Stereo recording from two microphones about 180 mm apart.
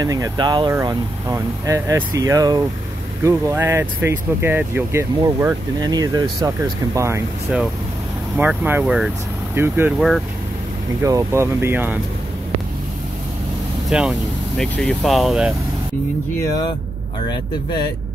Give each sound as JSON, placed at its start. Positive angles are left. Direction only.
{"t": 0.0, "sound": "speech", "side_deg": -20}
{"t": 7.4, "sound": "speech", "side_deg": 0}
{"t": 9.9, "sound": "speech", "side_deg": 0}
{"t": 11.1, "sound": "speech", "side_deg": -15}
{"t": 13.8, "sound": "speech", "side_deg": -5}